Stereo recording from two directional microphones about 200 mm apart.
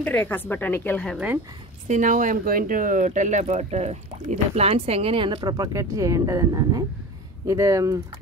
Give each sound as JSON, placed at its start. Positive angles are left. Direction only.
{"t": 0.0, "sound": "a woman's voice", "side_deg": 10}
{"t": 1.1, "sound": "speech", "side_deg": -10}
{"t": 1.9, "sound": "speech", "side_deg": -40}